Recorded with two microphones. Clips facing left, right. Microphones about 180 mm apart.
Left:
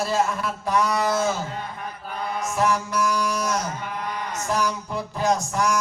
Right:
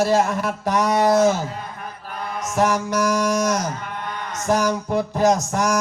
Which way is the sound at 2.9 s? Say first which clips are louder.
Right 4 dB; 40° right (ahead or behind).